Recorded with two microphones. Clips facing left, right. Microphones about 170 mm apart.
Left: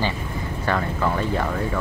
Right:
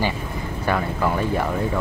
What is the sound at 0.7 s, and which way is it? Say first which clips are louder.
Speech: right 1 dB; 10° right (ahead or behind).